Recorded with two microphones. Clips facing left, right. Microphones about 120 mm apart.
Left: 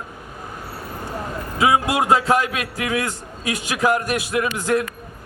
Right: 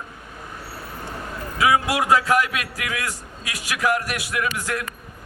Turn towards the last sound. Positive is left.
turn(degrees=25)  # may be behind; listen again after turning